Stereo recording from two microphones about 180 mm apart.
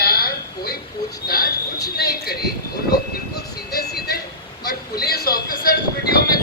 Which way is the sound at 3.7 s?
65° left (ahead or behind).